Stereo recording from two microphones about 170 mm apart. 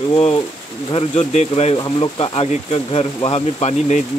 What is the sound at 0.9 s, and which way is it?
Speech, 40° left (ahead or behind).